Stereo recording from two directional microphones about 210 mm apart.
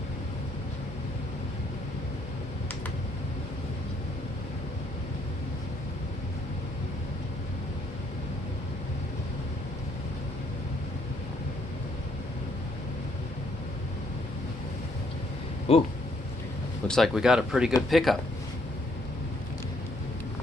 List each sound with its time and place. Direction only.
15.7 s speech: 25° left (ahead or behind)
16.8 s speech: centre (ahead or behind)